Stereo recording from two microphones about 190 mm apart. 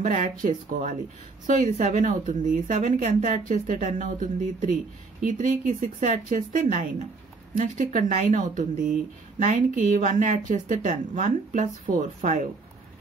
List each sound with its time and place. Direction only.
0.0 s a woman's voice: 40° right (ahead or behind)
9.9 s a woman's voice: 40° right (ahead or behind)